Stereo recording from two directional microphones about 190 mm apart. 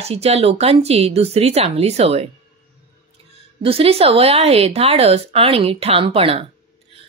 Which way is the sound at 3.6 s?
30° right (ahead or behind).